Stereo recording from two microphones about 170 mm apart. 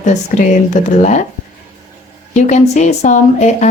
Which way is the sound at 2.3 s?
45° left (ahead or behind).